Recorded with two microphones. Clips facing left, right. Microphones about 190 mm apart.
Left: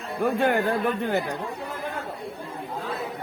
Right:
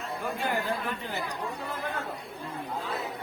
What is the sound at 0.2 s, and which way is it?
Speech, 60° left (ahead or behind).